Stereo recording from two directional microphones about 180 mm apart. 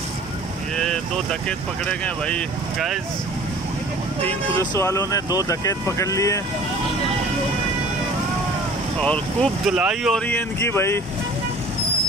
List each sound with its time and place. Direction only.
0.7 s vehicle: 5° left (ahead or behind)
1.9 s speech: 5° left (ahead or behind)
4.3 s speech: 15° left (ahead or behind)
9.0 s speech: 5° left (ahead or behind)
10.2 s speech: 10° left (ahead or behind)